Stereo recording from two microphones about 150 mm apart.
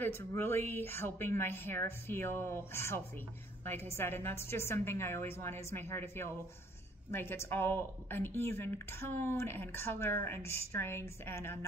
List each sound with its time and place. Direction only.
0.0 s a woman's voice: 15° left (ahead or behind)